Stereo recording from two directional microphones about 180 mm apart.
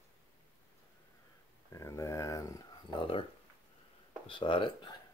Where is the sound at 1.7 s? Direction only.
15° left (ahead or behind).